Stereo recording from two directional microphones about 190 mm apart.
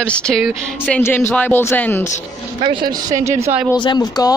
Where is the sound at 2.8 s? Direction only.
45° right (ahead or behind).